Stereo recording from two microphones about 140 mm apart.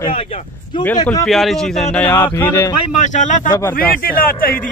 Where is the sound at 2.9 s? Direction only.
65° left (ahead or behind).